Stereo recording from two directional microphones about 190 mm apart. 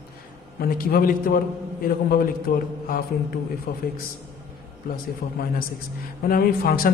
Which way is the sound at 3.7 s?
50° left (ahead or behind).